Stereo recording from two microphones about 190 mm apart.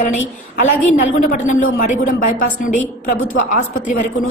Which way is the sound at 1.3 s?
40° left (ahead or behind).